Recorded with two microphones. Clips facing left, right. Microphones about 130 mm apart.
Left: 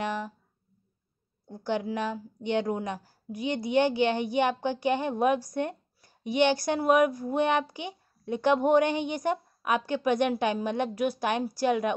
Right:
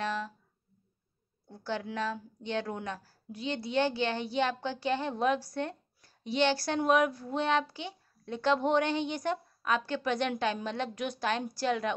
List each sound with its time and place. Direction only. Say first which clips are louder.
0.0 s speech: left 2 dB; 15° left (ahead or behind)
1.5 s a woman's voice: left 6 dB; 15° left (ahead or behind)